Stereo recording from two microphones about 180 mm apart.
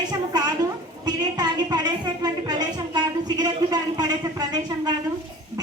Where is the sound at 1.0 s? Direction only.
20° right (ahead or behind).